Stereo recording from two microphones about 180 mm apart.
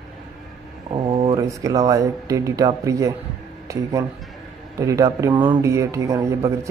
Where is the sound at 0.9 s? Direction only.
30° right (ahead or behind).